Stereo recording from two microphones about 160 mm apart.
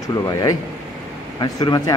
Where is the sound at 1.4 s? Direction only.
25° left (ahead or behind).